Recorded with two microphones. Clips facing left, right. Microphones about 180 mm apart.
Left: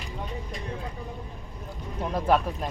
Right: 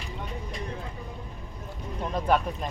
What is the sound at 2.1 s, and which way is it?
Speech, 5° left (ahead or behind).